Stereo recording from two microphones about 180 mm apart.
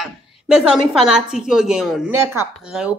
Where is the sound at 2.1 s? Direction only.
15° right (ahead or behind).